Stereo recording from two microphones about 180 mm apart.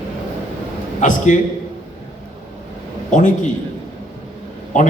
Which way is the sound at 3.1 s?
45° left (ahead or behind).